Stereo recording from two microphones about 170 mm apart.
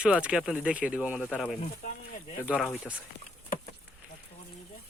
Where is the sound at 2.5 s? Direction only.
5° left (ahead or behind).